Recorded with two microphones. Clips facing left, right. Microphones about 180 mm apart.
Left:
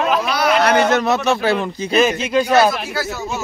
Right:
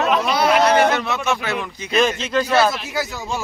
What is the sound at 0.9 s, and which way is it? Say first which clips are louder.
Speech: left 5 dB; 40° left (ahead or behind).